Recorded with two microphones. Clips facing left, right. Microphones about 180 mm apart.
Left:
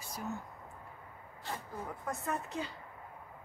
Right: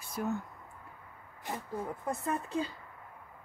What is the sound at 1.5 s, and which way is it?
Speech, 15° right (ahead or behind).